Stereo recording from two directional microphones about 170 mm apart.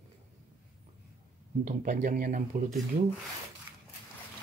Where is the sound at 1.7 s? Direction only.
50° right (ahead or behind).